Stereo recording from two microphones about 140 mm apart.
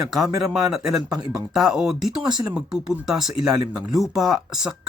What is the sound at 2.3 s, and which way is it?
Speech, 30° right (ahead or behind).